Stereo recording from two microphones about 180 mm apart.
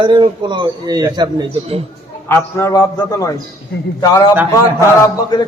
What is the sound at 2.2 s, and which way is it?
A man's voice, 15° left (ahead or behind).